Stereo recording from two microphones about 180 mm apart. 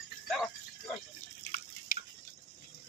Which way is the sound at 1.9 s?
55° left (ahead or behind).